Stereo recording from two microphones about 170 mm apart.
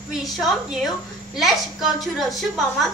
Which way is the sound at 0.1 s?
Centre (ahead or behind).